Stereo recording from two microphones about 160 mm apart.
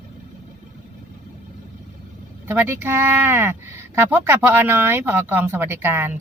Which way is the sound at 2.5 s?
15° right (ahead or behind).